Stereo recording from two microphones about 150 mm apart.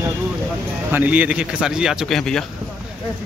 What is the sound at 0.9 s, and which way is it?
Speech, 10° right (ahead or behind).